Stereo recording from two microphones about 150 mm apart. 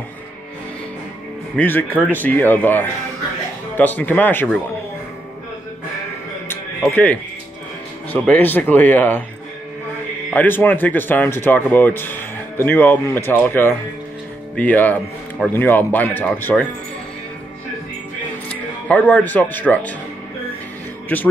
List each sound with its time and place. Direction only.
1.6 s speech: 10° left (ahead or behind)
6.5 s music: 10° left (ahead or behind)
8.1 s speech: 10° left (ahead or behind)
10.3 s speech: 15° left (ahead or behind)
18.5 s speech: 10° left (ahead or behind)
21.1 s speech: 15° left (ahead or behind)